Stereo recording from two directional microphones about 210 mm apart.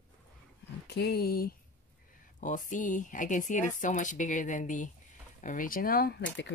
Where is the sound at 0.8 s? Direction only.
50° left (ahead or behind).